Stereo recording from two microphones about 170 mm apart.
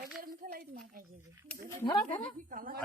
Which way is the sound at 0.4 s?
60° right (ahead or behind).